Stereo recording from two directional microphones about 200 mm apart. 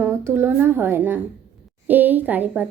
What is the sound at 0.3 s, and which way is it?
A woman's voice, 10° right (ahead or behind).